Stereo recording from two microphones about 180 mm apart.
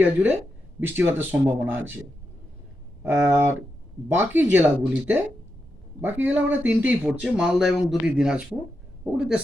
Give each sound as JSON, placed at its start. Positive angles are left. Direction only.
{"t": 0.0, "sound": "speech", "side_deg": -10}
{"t": 3.0, "sound": "speech", "side_deg": -10}